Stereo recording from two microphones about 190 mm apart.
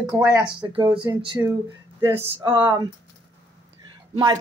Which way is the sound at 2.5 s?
25° right (ahead or behind).